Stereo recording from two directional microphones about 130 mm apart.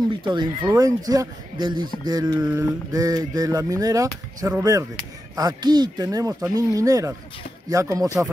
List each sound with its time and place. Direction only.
0.2 s speech: 35° right (ahead or behind)